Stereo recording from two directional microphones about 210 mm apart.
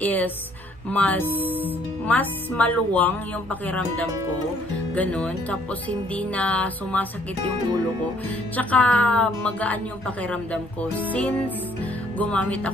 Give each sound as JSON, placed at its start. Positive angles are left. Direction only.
{"t": 0.0, "sound": "a woman's voice", "side_deg": 10}
{"t": 1.2, "sound": "speech", "side_deg": -10}
{"t": 2.0, "sound": "a woman's voice", "side_deg": 5}
{"t": 8.5, "sound": "a woman's voice", "side_deg": 5}